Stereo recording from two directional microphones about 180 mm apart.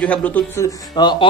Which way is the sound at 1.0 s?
25° left (ahead or behind).